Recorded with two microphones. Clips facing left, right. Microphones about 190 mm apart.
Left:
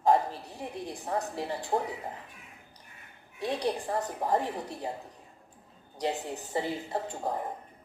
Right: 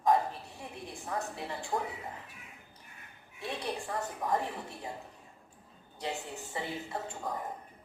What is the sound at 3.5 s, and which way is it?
A woman's voice, 35° left (ahead or behind).